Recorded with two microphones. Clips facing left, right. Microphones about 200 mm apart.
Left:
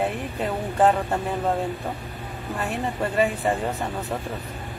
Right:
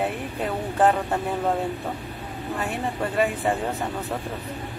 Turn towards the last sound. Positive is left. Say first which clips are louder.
# even
turn(degrees=0)  # may be behind; listen again after turning